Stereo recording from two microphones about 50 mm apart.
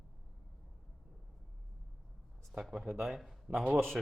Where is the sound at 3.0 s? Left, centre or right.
Centre.